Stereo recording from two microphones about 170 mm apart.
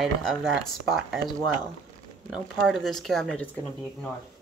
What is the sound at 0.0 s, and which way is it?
Speech, centre (ahead or behind).